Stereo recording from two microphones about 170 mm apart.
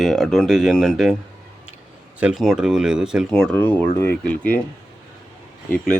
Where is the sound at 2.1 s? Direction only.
5° right (ahead or behind).